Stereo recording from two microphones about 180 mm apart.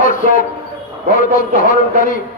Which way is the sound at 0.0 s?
45° left (ahead or behind).